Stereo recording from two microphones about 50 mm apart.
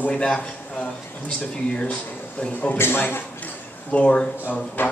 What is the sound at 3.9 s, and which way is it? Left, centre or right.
Speech, left.